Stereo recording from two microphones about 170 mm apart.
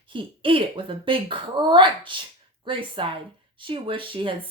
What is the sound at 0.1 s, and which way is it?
Speech, 30° right (ahead or behind).